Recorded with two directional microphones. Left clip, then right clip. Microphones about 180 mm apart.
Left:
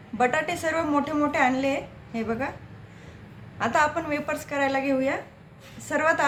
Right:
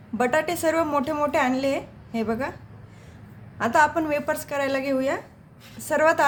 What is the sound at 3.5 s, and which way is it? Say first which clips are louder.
A woman's voice: right 3 dB; 65° right (ahead or behind).